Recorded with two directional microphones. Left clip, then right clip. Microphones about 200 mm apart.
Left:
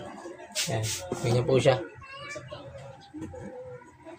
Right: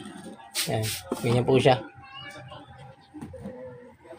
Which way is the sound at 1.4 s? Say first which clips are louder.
Right 2 dB; 30° right (ahead or behind).